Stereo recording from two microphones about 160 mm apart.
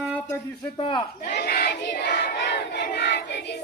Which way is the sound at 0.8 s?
30° left (ahead or behind).